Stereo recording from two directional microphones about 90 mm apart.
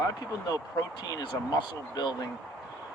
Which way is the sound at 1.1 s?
50° left (ahead or behind).